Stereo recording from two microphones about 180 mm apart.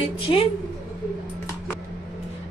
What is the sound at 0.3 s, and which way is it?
Speech, 30° left (ahead or behind).